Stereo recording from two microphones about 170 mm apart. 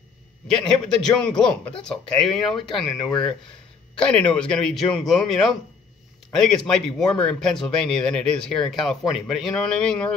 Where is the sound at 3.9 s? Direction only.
5° left (ahead or behind).